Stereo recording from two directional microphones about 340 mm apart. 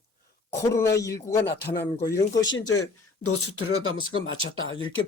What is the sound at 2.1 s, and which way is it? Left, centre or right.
Speech, centre.